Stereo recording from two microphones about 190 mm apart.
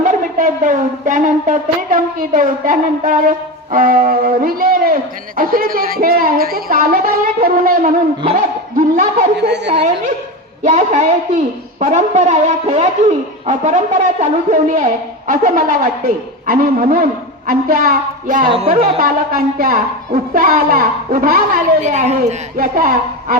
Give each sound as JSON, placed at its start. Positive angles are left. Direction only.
{"t": 0.0, "sound": "a woman's voice", "side_deg": -45}
{"t": 9.4, "sound": "speech", "side_deg": -65}
{"t": 10.6, "sound": "a woman's voice", "side_deg": -40}
{"t": 18.4, "sound": "speech", "side_deg": -30}
{"t": 18.9, "sound": "a woman's voice", "side_deg": -50}